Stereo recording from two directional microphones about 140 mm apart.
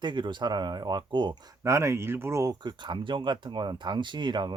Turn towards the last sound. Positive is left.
turn(degrees=-30)  # may be behind; listen again after turning